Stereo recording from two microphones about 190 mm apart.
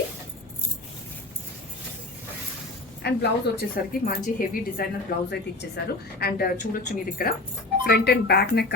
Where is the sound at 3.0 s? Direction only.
60° left (ahead or behind).